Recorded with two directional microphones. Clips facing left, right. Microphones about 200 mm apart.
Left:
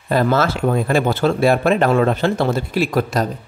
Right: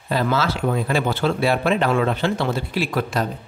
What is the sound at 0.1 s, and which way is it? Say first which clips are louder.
Speech: left 5 dB; 50° left (ahead or behind).